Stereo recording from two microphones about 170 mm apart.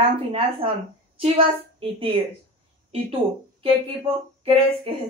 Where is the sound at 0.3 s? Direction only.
35° right (ahead or behind).